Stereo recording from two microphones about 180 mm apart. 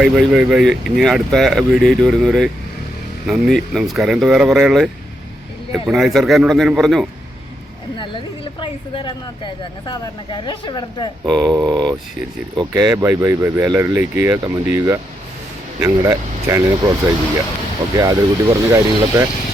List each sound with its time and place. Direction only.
0.0 s speech: centre (ahead or behind)
5.9 s speech: centre (ahead or behind)
7.9 s speech: 25° left (ahead or behind)
11.3 s speech: 5° left (ahead or behind)
11.5 s speech: 25° right (ahead or behind)
17.9 s speech: 20° right (ahead or behind)